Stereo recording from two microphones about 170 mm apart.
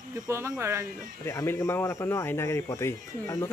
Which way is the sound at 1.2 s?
15° left (ahead or behind).